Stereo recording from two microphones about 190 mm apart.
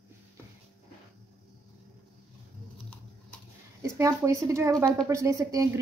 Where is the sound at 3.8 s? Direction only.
15° right (ahead or behind).